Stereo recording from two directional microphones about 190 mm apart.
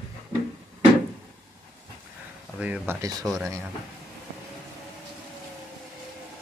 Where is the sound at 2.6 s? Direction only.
5° right (ahead or behind).